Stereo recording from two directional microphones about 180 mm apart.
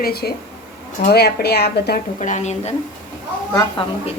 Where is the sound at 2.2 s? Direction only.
40° left (ahead or behind).